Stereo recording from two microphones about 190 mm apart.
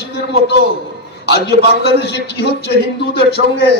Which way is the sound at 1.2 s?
65° left (ahead or behind).